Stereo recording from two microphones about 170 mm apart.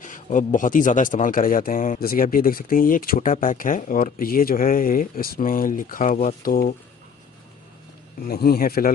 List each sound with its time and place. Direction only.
0.0 s speech: 50° left (ahead or behind)
8.2 s speech: 60° left (ahead or behind)